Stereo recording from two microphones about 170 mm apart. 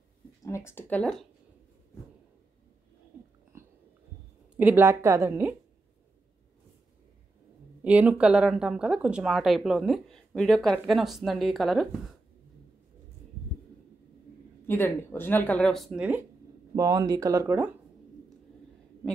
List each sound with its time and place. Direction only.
0.4 s speech: 15° left (ahead or behind)
4.6 s a woman's voice: 10° right (ahead or behind)
7.8 s speech: 10° right (ahead or behind)
14.7 s speech: 10° left (ahead or behind); by 16.2 s 5° right (ahead or behind)
16.7 s speech: 20° right (ahead or behind)